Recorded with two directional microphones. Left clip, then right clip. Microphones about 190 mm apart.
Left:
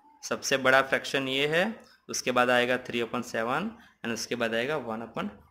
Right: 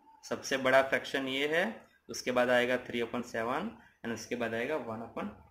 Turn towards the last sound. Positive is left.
turn(degrees=55)  # may be behind; listen again after turning